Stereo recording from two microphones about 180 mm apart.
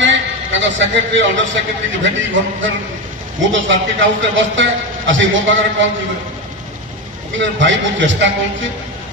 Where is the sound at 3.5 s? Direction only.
90° right.